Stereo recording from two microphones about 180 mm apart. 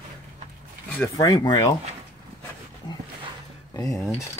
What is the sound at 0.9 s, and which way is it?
Speech, 15° left (ahead or behind).